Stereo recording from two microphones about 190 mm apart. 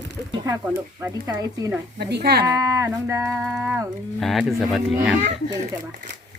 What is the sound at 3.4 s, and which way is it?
Speech, 5° right (ahead or behind).